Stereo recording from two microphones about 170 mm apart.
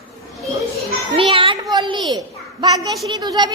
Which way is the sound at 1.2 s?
30° right (ahead or behind).